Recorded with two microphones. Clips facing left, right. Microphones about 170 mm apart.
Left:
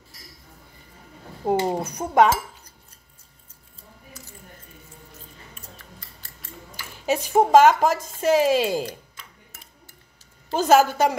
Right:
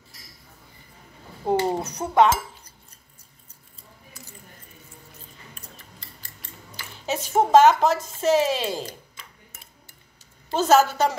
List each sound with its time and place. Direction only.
1.4 s a woman's voice: 10° left (ahead or behind)
6.8 s speech: 10° left (ahead or behind)
10.5 s a woman's voice: 15° left (ahead or behind)